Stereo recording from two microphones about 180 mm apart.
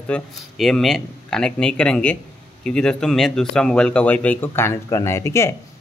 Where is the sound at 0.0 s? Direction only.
5° left (ahead or behind).